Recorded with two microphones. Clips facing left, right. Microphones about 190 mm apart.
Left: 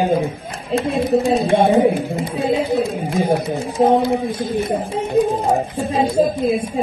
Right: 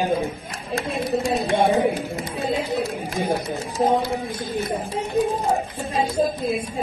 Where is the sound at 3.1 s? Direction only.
25° left (ahead or behind).